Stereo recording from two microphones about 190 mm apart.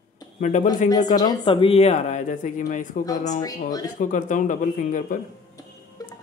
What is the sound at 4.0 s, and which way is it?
Speech, 45° left (ahead or behind).